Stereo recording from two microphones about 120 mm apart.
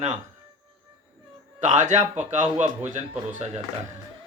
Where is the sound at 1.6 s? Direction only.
90° right; by 3.6 s 75° right (ahead or behind).